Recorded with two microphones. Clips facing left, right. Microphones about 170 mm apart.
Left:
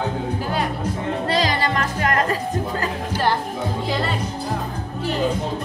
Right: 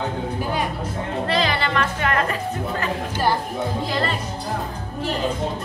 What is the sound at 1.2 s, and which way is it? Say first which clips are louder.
Music: even; 40° left (ahead or behind).